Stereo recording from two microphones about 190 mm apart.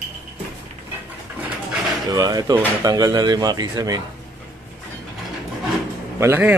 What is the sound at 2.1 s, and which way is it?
Speech, 20° right (ahead or behind).